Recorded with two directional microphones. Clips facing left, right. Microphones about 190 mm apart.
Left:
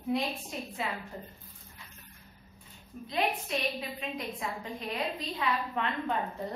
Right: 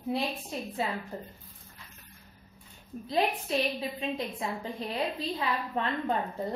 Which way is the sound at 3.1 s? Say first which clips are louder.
Right 3 dB; 35° right (ahead or behind).